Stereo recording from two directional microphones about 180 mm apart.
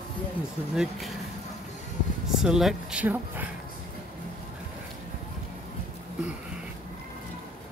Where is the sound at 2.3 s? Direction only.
Centre (ahead or behind).